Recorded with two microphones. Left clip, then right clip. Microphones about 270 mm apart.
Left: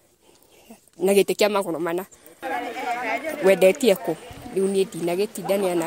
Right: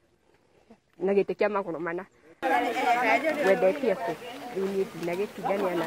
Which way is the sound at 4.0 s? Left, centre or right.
Centre.